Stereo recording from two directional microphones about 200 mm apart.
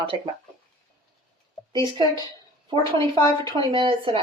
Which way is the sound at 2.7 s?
25° right (ahead or behind).